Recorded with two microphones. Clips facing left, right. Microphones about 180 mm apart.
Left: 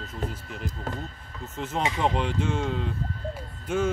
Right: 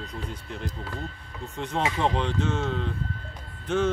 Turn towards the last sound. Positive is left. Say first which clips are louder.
# right 1 dB
turn(degrees=10)  # may be behind; listen again after turning